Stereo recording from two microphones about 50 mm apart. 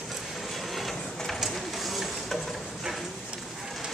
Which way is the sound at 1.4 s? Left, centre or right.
Centre.